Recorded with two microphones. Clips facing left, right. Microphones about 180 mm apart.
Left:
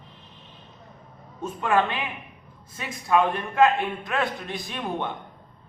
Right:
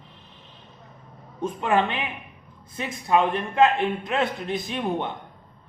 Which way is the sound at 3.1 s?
20° right (ahead or behind).